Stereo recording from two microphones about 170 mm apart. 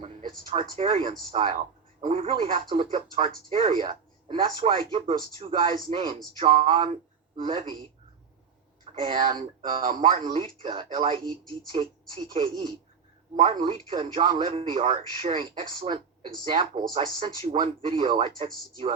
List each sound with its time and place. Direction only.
0.0 s a sound: 35° right (ahead or behind)
0.8 s speech: 30° right (ahead or behind)
8.8 s speech: 35° right (ahead or behind)